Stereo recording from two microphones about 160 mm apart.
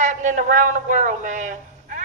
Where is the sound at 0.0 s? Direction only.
50° right (ahead or behind).